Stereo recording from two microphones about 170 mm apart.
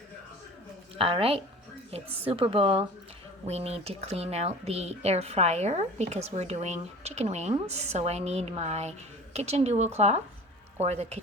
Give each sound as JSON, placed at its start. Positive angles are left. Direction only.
{"t": 0.9, "sound": "speech", "side_deg": -35}